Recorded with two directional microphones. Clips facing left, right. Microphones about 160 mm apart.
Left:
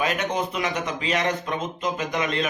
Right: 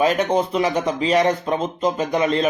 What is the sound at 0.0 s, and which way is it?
Speech, 35° right (ahead or behind).